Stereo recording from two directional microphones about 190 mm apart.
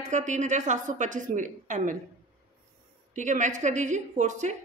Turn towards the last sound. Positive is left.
turn(degrees=-40)  # may be behind; listen again after turning